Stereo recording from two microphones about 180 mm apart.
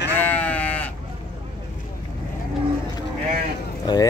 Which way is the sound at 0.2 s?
10° left (ahead or behind).